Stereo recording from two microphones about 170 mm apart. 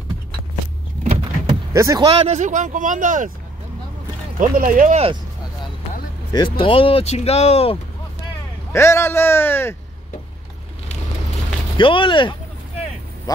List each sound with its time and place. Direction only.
1.5 s vehicle: 20° right (ahead or behind)
2.0 s speech: 40° right (ahead or behind)
4.4 s speech: 50° right (ahead or behind)
6.3 s speech: 30° left (ahead or behind)
8.7 s a man's voice: 15° left (ahead or behind)
11.7 s speech: 30° left (ahead or behind)